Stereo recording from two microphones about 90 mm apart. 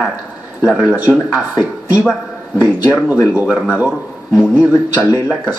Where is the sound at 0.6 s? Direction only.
10° right (ahead or behind).